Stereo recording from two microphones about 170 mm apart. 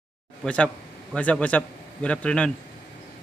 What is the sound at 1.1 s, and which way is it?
A man's voice, 5° left (ahead or behind).